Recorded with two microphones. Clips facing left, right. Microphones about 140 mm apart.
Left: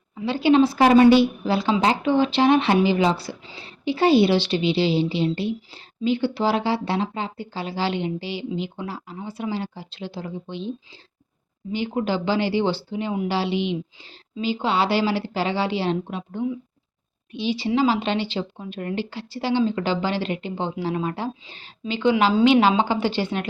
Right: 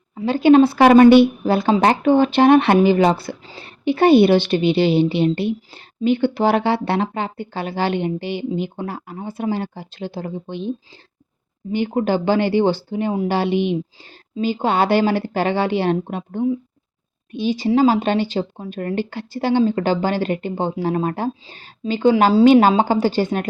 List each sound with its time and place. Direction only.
0.2 s a woman's voice: 45° right (ahead or behind)